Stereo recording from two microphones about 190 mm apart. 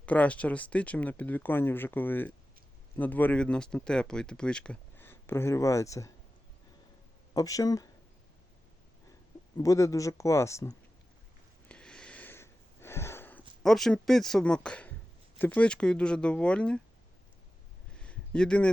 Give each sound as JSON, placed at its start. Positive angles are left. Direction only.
{"t": 0.0, "sound": "speech", "side_deg": 5}
{"t": 7.3, "sound": "speech", "side_deg": 20}
{"t": 9.6, "sound": "speech", "side_deg": 15}
{"t": 11.7, "sound": "a sound", "side_deg": 5}
{"t": 13.6, "sound": "speech", "side_deg": 0}
{"t": 17.9, "sound": "a sound", "side_deg": 5}